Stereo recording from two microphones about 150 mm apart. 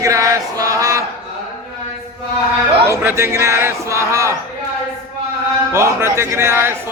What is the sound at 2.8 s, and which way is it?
Speech, 15° right (ahead or behind).